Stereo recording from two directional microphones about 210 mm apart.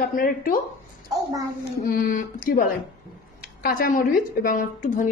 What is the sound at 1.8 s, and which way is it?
A woman's voice, 40° left (ahead or behind).